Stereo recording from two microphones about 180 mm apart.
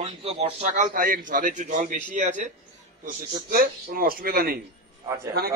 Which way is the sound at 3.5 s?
55° right (ahead or behind).